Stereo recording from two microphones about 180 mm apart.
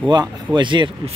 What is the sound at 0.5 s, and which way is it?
Speech, 25° right (ahead or behind).